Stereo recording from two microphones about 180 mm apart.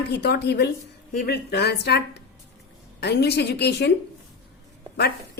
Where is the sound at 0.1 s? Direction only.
70° left (ahead or behind).